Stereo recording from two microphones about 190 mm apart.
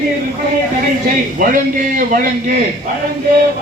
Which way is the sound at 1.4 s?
45° right (ahead or behind).